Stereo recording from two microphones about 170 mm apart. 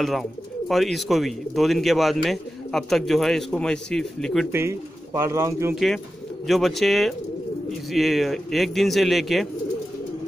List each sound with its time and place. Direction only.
0.0 s speech: centre (ahead or behind)
4.5 s speech: 15° right (ahead or behind)
6.4 s speech: centre (ahead or behind)